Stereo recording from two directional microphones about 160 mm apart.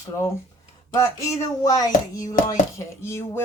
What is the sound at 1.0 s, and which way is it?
Speech, 20° left (ahead or behind).